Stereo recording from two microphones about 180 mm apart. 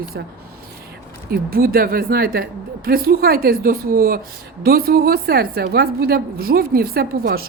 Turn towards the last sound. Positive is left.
turn(degrees=-55)  # may be behind; listen again after turning